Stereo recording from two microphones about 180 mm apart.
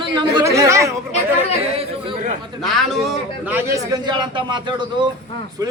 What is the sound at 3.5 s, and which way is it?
A man's voice, 15° right (ahead or behind).